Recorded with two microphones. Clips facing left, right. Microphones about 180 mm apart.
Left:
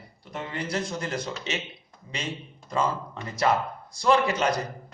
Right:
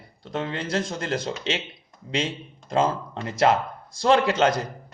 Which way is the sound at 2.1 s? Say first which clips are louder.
Right 7 dB; 90° right.